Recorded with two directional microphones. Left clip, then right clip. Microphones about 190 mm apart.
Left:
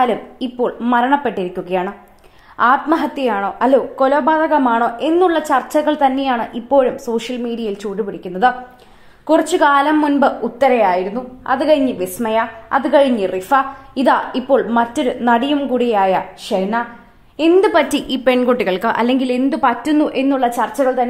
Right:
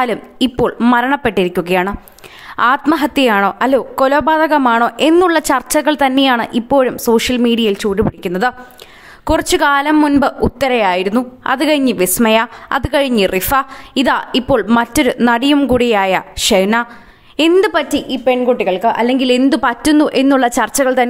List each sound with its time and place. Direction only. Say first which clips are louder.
0.0 s a woman's voice: right 1 dB; 30° right (ahead or behind)
10.7 s a woman's voice: right 2 dB; 45° right (ahead or behind); by 17.7 s 25° right (ahead or behind)
17.8 s a woman's voice: right 1 dB; centre (ahead or behind)
19.1 s a woman's voice: right 5 dB; 15° right (ahead or behind); by 21.1 s 40° right (ahead or behind)